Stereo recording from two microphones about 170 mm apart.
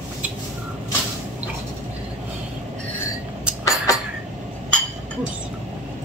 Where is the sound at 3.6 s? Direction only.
20° left (ahead or behind).